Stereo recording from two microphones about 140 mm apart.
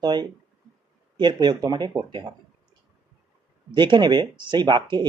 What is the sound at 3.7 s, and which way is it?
Speech, 35° right (ahead or behind).